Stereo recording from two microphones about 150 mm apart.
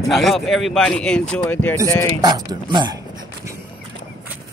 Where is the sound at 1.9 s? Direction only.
20° left (ahead or behind).